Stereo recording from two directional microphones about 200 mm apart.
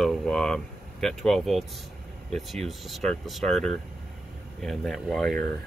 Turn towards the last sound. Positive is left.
turn(degrees=0)  # may be behind; listen again after turning